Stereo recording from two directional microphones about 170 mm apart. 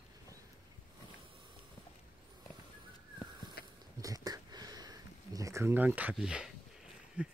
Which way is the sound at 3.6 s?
65° left (ahead or behind).